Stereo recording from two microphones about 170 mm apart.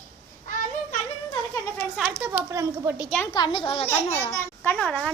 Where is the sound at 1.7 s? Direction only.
10° left (ahead or behind).